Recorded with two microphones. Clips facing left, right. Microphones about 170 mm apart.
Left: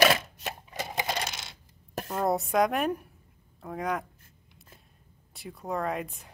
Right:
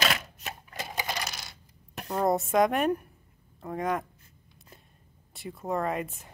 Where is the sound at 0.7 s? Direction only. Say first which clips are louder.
Left 2 dB; 20° left (ahead or behind).